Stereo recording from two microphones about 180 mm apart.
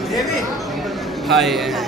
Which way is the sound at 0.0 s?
Centre (ahead or behind).